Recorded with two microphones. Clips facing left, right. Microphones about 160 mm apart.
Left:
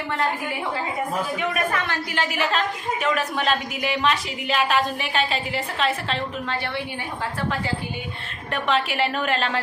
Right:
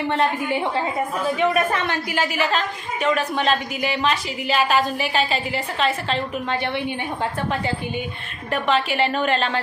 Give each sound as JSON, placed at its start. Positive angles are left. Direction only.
{"t": 1.4, "sound": "speech", "side_deg": -25}
{"t": 2.1, "sound": "a woman's voice", "side_deg": 0}
{"t": 8.5, "sound": "a woman's voice", "side_deg": 0}